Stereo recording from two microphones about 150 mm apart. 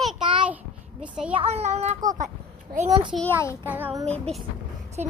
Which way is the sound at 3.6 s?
10° right (ahead or behind).